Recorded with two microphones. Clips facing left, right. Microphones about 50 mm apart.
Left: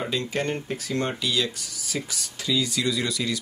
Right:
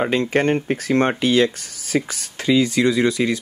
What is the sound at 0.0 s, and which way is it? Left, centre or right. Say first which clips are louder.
Speech: right 9 dB; right.